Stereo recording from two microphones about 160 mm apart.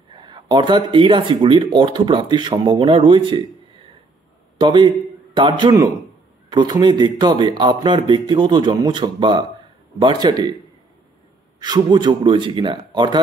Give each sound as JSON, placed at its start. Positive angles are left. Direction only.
{"t": 0.1, "sound": "speech", "side_deg": -30}
{"t": 4.6, "sound": "a man's voice", "side_deg": -30}
{"t": 11.6, "sound": "speech", "side_deg": -25}